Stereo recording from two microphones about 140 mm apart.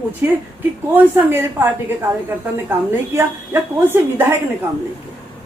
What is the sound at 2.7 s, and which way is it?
A woman's voice, 15° right (ahead or behind).